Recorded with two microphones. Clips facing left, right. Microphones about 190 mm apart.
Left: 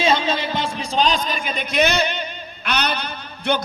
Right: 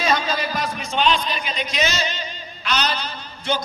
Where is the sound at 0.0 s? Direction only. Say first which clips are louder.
Left 2 dB; 25° left (ahead or behind).